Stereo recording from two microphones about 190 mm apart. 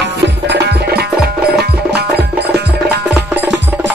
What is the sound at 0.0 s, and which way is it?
Music, 65° right (ahead or behind).